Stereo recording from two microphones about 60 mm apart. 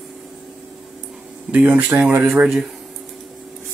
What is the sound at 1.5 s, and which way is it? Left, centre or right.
Speech, right.